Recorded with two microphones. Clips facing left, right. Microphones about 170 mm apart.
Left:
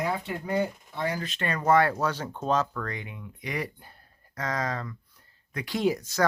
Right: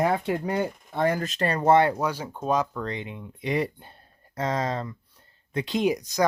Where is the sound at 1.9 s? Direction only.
10° right (ahead or behind).